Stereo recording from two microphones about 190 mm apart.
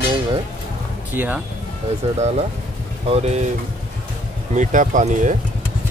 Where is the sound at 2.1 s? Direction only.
35° right (ahead or behind).